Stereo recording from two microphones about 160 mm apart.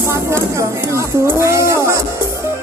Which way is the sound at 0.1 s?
15° right (ahead or behind).